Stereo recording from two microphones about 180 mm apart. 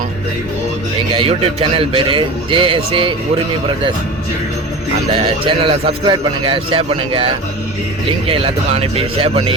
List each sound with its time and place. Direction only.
1.1 s a man's voice: 30° right (ahead or behind)
5.1 s a man's voice: 30° right (ahead or behind)
8.3 s speech: 35° right (ahead or behind)